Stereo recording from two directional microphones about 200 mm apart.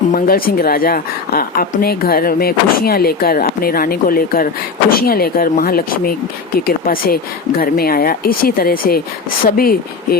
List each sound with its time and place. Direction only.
0.1 s a woman's voice: 45° left (ahead or behind)